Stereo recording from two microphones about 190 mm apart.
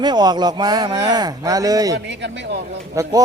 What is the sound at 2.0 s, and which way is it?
Speech, 65° right (ahead or behind).